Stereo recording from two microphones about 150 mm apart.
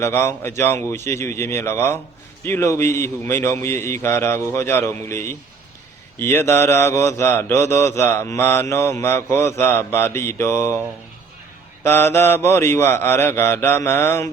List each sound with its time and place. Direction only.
0.0 s mantra: 15° left (ahead or behind)
11.8 s mantra: 15° left (ahead or behind)